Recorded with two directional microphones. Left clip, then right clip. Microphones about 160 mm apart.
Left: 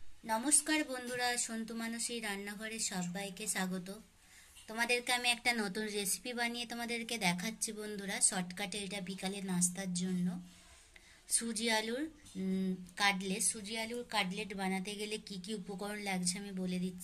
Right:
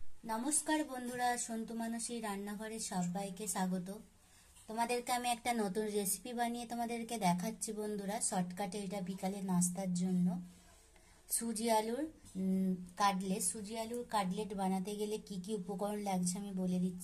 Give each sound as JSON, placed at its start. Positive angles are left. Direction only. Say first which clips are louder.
{"t": 0.3, "sound": "a woman's voice", "louder": "left 3 dB", "side_deg": -25}
{"t": 11.3, "sound": "a woman's voice", "louder": "right 1 dB", "side_deg": -35}